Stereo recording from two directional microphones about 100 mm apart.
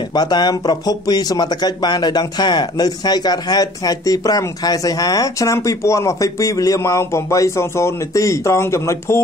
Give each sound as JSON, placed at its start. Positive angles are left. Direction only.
{"t": 0.1, "sound": "speech", "side_deg": 45}